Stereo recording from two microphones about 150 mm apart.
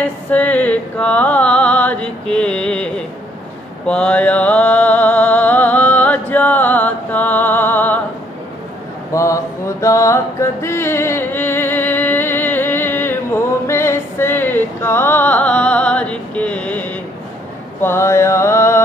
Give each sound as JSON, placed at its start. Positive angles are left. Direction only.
{"t": 0.0, "sound": "music", "side_deg": 10}
{"t": 3.8, "sound": "mantra", "side_deg": 5}
{"t": 9.1, "sound": "mantra", "side_deg": 20}